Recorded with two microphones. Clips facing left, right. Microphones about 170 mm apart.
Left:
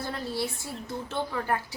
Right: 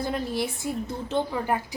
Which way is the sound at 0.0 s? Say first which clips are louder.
Right 4 dB; 15° right (ahead or behind).